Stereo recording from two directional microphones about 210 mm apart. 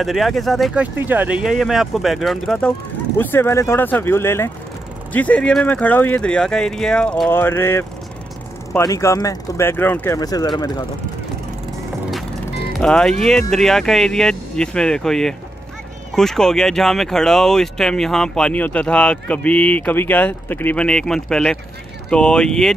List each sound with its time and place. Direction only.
0.0 s speech: centre (ahead or behind); by 10.7 s 20° left (ahead or behind)
12.7 s speech: 5° left (ahead or behind)